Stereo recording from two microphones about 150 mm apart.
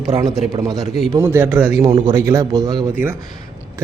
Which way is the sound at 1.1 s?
15° right (ahead or behind).